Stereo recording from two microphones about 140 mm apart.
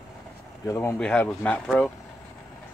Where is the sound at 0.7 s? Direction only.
20° left (ahead or behind).